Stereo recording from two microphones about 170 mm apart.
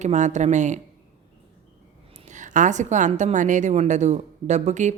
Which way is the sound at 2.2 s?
45° right (ahead or behind).